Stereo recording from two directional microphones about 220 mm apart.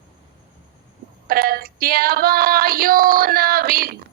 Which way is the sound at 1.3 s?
45° right (ahead or behind).